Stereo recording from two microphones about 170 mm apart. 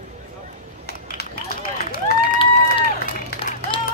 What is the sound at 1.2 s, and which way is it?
Run, 65° left (ahead or behind).